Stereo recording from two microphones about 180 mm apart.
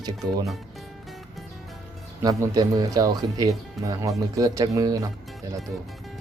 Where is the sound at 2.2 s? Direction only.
20° right (ahead or behind).